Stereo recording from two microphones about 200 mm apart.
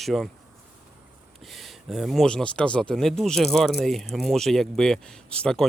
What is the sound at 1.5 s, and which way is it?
Speech, centre (ahead or behind).